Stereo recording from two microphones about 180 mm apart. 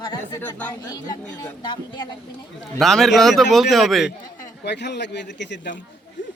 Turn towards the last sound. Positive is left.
turn(degrees=75)  # may be behind; listen again after turning